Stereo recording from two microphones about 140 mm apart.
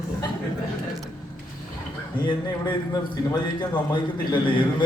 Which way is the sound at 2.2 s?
30° left (ahead or behind).